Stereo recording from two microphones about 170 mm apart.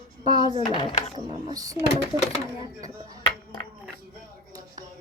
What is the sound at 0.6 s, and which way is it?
Speech, 25° left (ahead or behind).